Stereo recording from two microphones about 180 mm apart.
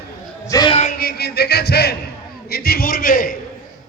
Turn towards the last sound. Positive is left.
turn(degrees=50)  # may be behind; listen again after turning